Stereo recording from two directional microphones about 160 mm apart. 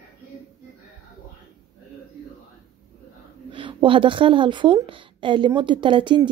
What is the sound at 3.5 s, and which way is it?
A woman's voice, 30° right (ahead or behind).